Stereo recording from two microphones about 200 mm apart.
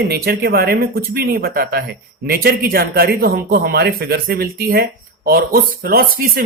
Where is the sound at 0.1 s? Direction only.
50° right (ahead or behind).